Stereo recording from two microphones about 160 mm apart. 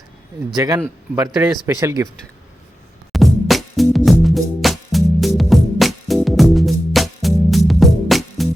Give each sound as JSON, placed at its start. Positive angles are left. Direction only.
{"t": 0.5, "sound": "speech", "side_deg": -25}
{"t": 3.1, "sound": "music", "side_deg": 0}